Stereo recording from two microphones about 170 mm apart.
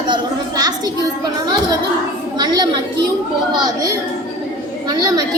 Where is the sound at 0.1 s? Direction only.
25° right (ahead or behind).